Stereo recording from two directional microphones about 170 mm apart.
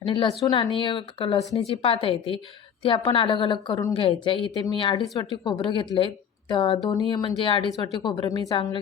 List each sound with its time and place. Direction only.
0.0 s a woman's voice: 30° left (ahead or behind)